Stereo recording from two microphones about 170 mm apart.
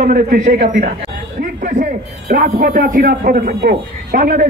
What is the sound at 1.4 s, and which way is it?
A man's voice, 50° right (ahead or behind).